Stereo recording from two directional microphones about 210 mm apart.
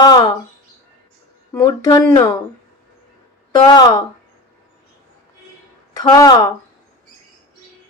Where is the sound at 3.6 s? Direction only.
20° left (ahead or behind).